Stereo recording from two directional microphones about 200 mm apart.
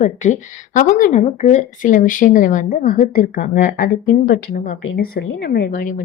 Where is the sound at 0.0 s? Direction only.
35° left (ahead or behind).